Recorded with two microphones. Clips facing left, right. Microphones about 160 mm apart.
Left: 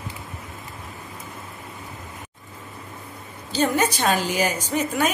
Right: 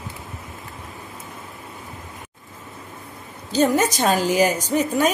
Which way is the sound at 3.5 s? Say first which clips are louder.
Right 3 dB; 40° right (ahead or behind).